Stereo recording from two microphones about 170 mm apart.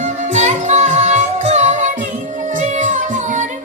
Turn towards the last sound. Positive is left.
turn(degrees=-45)  # may be behind; listen again after turning